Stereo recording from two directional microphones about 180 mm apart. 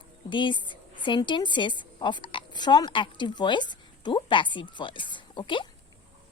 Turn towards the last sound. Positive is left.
turn(degrees=25)  # may be behind; listen again after turning